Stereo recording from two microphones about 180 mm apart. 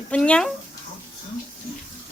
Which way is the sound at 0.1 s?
5° left (ahead or behind).